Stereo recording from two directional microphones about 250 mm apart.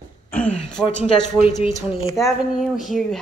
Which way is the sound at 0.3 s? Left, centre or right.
Centre.